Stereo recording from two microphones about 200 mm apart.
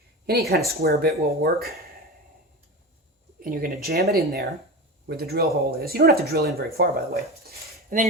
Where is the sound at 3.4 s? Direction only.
45° right (ahead or behind).